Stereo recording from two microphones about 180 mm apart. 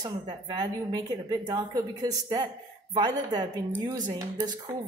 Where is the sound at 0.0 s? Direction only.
25° right (ahead or behind).